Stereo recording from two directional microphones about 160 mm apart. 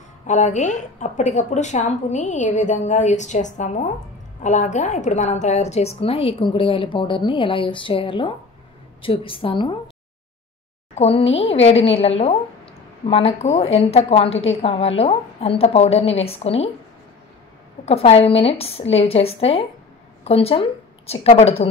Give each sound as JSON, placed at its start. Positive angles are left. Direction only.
{"t": 0.3, "sound": "a woman's voice", "side_deg": 50}
{"t": 11.0, "sound": "a woman's voice", "side_deg": 40}
{"t": 17.8, "sound": "a woman's voice", "side_deg": 40}